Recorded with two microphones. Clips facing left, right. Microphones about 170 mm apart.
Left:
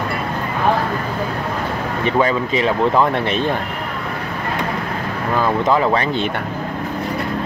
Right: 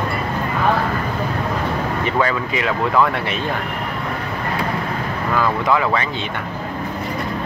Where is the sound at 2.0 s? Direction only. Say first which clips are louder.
Left 5 dB; 20° left (ahead or behind).